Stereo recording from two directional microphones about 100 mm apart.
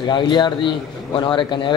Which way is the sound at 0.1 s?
50° left (ahead or behind).